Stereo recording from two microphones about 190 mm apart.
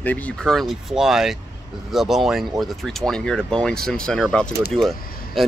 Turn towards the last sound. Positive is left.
turn(degrees=0)  # may be behind; listen again after turning